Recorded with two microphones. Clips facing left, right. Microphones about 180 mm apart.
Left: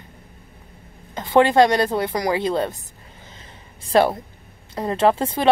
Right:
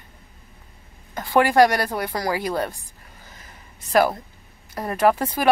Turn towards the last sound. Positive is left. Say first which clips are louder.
# left 1 dB
turn(degrees=25)  # may be behind; listen again after turning